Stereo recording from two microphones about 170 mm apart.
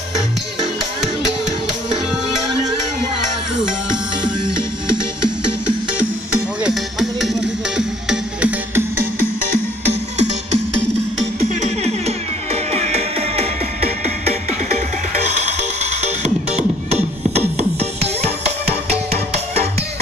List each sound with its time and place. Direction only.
6.6 s music: centre (ahead or behind)
12.7 s music: 40° right (ahead or behind)